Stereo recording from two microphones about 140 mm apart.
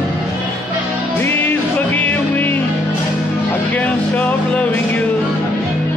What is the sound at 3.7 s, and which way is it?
Music, 10° left (ahead or behind).